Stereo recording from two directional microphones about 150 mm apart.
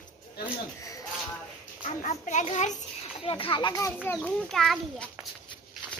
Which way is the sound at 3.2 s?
35° left (ahead or behind).